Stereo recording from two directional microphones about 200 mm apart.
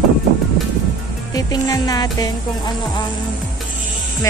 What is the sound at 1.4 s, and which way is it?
Music, 20° left (ahead or behind).